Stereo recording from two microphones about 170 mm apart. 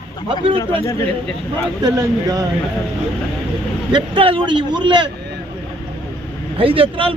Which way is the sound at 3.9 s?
30° right (ahead or behind).